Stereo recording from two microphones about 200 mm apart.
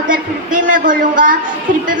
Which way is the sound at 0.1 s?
40° right (ahead or behind).